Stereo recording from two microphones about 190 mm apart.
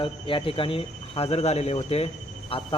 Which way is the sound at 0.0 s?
25° left (ahead or behind).